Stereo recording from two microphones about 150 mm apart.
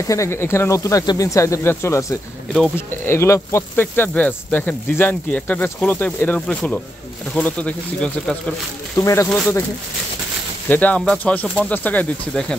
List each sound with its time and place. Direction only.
0.0 s speech: 20° left (ahead or behind)
8.9 s speech: 20° left (ahead or behind)
10.7 s speech: 10° left (ahead or behind)